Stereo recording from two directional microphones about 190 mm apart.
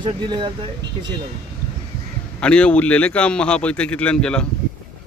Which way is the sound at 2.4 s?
5° left (ahead or behind).